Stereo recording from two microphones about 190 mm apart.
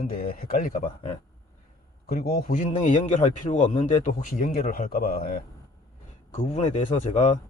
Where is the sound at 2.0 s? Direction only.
50° left (ahead or behind).